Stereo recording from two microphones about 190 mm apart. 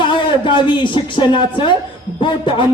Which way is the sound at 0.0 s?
25° left (ahead or behind).